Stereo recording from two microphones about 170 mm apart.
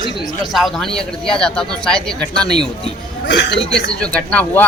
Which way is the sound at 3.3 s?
90° left.